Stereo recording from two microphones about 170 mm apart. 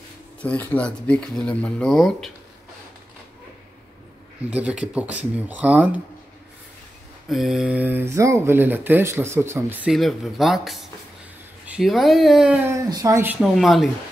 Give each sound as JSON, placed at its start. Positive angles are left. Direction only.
{"t": 0.4, "sound": "speech", "side_deg": 10}
{"t": 4.5, "sound": "speech", "side_deg": -5}
{"t": 7.2, "sound": "speech", "side_deg": 0}
{"t": 9.9, "sound": "speech", "side_deg": 0}
{"t": 12.6, "sound": "speech", "side_deg": -20}
{"t": 13.4, "sound": "speech", "side_deg": 0}